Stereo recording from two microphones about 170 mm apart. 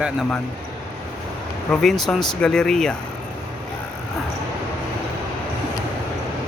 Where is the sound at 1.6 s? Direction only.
Centre (ahead or behind).